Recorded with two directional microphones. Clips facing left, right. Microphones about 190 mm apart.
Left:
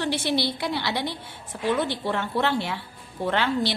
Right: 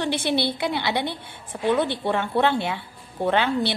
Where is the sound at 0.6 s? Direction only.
20° right (ahead or behind).